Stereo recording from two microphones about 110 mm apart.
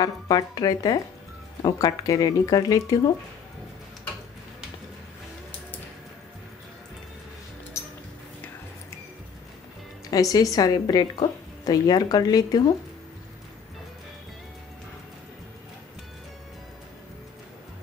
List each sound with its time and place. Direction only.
0.0 s a woman's voice: 35° left (ahead or behind)
10.1 s a woman's voice: 35° left (ahead or behind)